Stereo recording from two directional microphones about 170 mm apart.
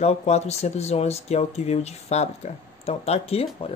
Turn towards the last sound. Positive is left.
turn(degrees=35)  # may be behind; listen again after turning